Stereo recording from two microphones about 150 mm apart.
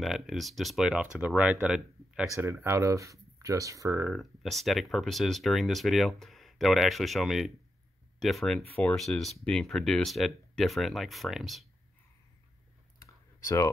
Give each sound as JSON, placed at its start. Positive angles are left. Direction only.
{"t": 0.0, "sound": "speech", "side_deg": 0}
{"t": 2.6, "sound": "speech", "side_deg": -20}
{"t": 4.1, "sound": "speech", "side_deg": 0}
{"t": 13.0, "sound": "clicking", "side_deg": 20}